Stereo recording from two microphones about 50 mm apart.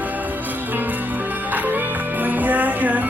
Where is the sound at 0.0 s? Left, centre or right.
Right.